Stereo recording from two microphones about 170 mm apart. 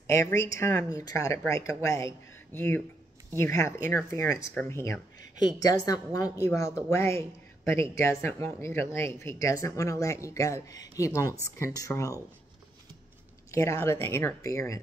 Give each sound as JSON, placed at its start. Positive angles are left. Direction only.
{"t": 0.0, "sound": "a woman's voice", "side_deg": 15}
{"t": 13.5, "sound": "a woman's voice", "side_deg": 15}